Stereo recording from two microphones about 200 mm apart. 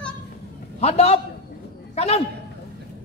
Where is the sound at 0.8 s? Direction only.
30° left (ahead or behind).